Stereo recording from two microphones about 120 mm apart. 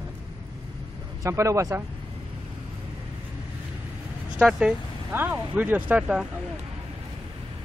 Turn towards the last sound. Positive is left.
turn(degrees=-10)  # may be behind; listen again after turning